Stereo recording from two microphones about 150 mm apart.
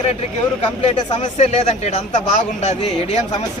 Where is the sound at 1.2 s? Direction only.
45° left (ahead or behind).